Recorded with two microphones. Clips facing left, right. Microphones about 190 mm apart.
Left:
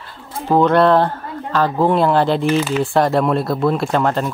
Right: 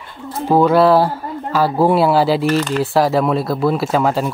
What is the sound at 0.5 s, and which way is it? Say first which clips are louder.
Speech: right 1 dB; 5° right (ahead or behind).